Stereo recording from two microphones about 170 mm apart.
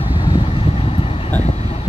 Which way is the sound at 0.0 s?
30° left (ahead or behind).